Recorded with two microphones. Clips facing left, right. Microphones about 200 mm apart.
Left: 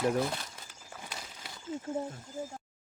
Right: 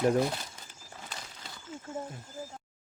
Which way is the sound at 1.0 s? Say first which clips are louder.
Even; 10° left (ahead or behind).